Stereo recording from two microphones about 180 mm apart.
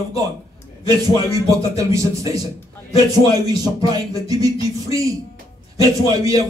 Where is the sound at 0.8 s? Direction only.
20° right (ahead or behind).